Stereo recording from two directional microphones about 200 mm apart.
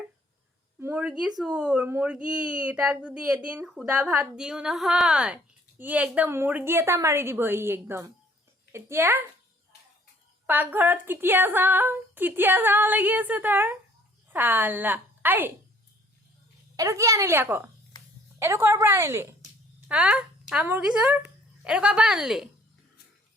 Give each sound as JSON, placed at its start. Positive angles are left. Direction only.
{"t": 0.8, "sound": "a sound", "side_deg": -5}
{"t": 1.4, "sound": "a child's voice", "side_deg": -5}
{"t": 10.4, "sound": "speech", "side_deg": -10}
{"t": 16.7, "sound": "a woman's voice", "side_deg": -15}